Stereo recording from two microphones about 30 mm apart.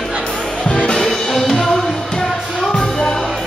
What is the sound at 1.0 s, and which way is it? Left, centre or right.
Music, centre.